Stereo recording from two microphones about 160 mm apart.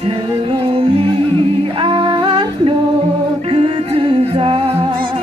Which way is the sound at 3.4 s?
35° right (ahead or behind).